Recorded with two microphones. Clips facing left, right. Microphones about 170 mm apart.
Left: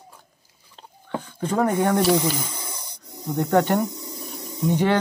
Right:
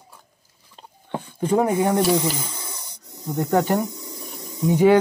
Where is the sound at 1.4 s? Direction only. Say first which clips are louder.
Right 2 dB; 15° right (ahead or behind).